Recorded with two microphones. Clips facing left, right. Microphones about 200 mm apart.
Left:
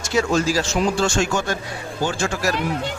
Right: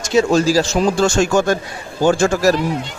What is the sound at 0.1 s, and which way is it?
A man's voice, 30° right (ahead or behind).